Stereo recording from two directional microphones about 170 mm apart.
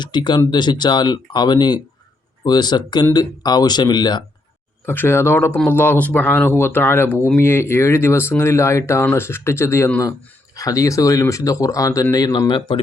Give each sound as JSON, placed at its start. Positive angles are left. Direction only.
{"t": 0.0, "sound": "speech", "side_deg": 25}
{"t": 4.9, "sound": "speech", "side_deg": 15}